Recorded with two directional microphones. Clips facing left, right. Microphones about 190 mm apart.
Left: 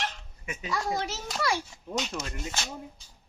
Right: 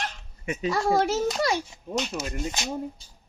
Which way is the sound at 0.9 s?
55° right (ahead or behind).